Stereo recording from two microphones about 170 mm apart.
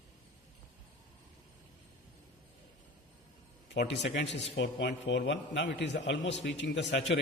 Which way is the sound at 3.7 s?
90° left.